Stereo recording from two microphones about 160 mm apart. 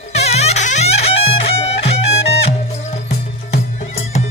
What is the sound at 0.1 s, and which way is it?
Music, 45° left (ahead or behind).